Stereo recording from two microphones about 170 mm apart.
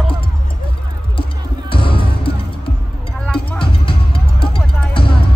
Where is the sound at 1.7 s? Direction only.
30° left (ahead or behind).